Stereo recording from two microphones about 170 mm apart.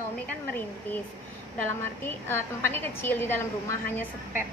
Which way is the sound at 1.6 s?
15° left (ahead or behind).